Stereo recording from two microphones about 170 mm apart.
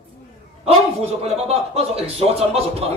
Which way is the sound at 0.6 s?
35° right (ahead or behind).